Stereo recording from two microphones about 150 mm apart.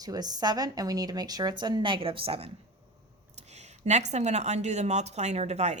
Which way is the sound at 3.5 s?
50° right (ahead or behind).